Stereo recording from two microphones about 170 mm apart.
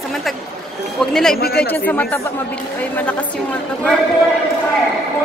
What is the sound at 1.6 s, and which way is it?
A woman's voice, 10° left (ahead or behind).